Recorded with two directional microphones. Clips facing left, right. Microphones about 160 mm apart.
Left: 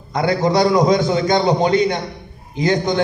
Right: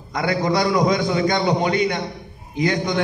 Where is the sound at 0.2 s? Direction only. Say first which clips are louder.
Left 4 dB; 30° left (ahead or behind).